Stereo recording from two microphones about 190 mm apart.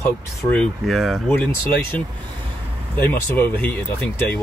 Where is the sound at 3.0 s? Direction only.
10° left (ahead or behind).